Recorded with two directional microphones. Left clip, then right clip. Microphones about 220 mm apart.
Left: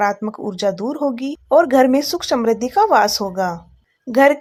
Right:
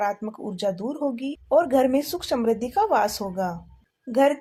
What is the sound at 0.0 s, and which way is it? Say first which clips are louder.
Speech: left 7 dB; 25° left (ahead or behind).